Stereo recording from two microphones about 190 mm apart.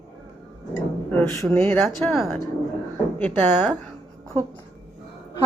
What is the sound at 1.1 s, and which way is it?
Speech, 15° left (ahead or behind).